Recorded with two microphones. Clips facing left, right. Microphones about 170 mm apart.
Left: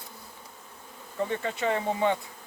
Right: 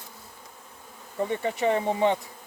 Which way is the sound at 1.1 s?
15° right (ahead or behind).